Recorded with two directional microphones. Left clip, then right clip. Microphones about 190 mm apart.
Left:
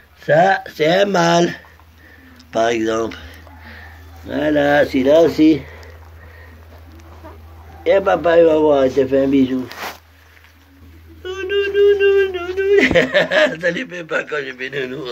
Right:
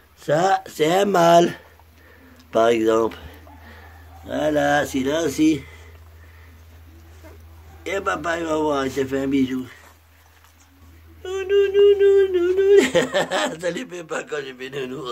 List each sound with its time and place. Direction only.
0.2 s speech: 30° right (ahead or behind)
2.5 s a sound: 40° right (ahead or behind)
4.3 s a man's voice: 25° right (ahead or behind)
7.8 s a man's voice: 25° right (ahead or behind)
11.2 s speech: 20° right (ahead or behind)